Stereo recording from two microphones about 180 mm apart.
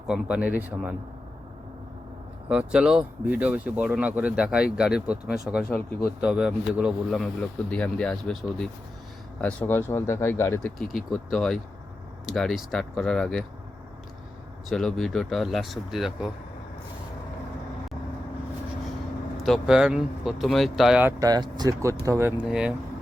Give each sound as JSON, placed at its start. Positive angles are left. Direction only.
{"t": 0.1, "sound": "speech", "side_deg": -5}
{"t": 2.5, "sound": "speech", "side_deg": -5}
{"t": 10.8, "sound": "speech", "side_deg": 0}
{"t": 14.7, "sound": "speech", "side_deg": 0}
{"t": 19.4, "sound": "speech", "side_deg": 0}
{"t": 21.2, "sound": "speech", "side_deg": -20}